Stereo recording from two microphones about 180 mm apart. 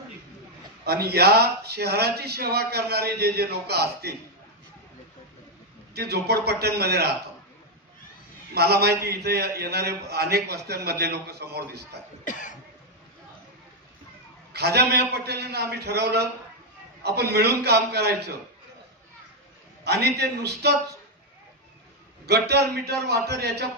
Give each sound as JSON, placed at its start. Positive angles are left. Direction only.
{"t": 0.8, "sound": "a man's voice", "side_deg": -60}
{"t": 5.9, "sound": "a man's voice", "side_deg": -65}
{"t": 8.5, "sound": "a man's voice", "side_deg": -65}
{"t": 12.3, "sound": "cough", "side_deg": 45}
{"t": 14.5, "sound": "a man's voice", "side_deg": -65}
{"t": 19.8, "sound": "a man's voice", "side_deg": -65}
{"t": 22.2, "sound": "a man's voice", "side_deg": -65}